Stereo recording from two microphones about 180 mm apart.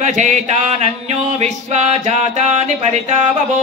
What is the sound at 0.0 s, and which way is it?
Chant, 40° right (ahead or behind).